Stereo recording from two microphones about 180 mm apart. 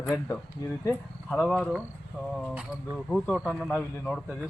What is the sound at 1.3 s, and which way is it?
Speech, centre (ahead or behind).